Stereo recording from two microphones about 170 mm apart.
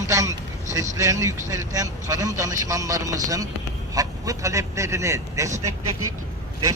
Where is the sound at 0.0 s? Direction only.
20° right (ahead or behind).